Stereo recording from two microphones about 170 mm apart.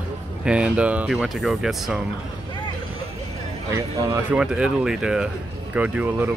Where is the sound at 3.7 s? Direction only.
15° right (ahead or behind).